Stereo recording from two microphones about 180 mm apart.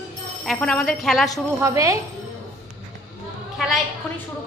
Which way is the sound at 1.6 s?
15° right (ahead or behind).